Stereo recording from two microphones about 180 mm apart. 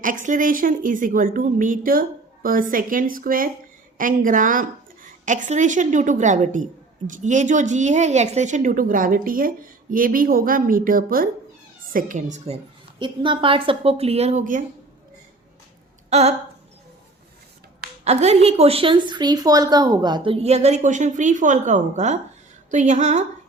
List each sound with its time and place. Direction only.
0.0 s a woman's voice: 45° right (ahead or behind)
13.0 s speech: 25° right (ahead or behind); by 14.6 s 45° right (ahead or behind)
16.0 s speech: 35° right (ahead or behind)
18.0 s speech: 40° right (ahead or behind)